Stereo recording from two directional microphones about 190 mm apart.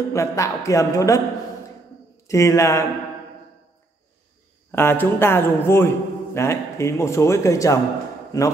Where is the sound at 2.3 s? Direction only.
15° left (ahead or behind).